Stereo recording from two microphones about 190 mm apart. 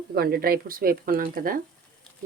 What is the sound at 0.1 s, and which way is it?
Speech, 55° right (ahead or behind).